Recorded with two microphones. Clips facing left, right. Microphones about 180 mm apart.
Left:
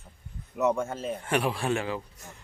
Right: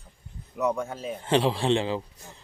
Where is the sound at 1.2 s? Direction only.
25° right (ahead or behind).